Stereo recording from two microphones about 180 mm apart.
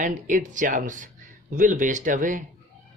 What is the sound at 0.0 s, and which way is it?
Speech, 45° right (ahead or behind).